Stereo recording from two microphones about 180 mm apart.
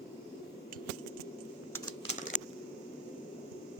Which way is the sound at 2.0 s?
40° left (ahead or behind).